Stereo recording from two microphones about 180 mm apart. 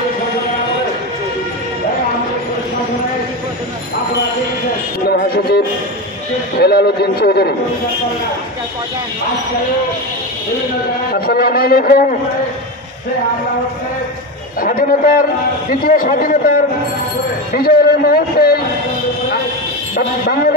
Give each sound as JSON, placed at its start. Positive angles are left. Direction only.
{"t": 5.0, "sound": "music", "side_deg": 60}
{"t": 6.6, "sound": "a man's voice", "side_deg": 65}
{"t": 11.1, "sound": "a man's voice", "side_deg": 60}
{"t": 14.6, "sound": "a man's voice", "side_deg": 50}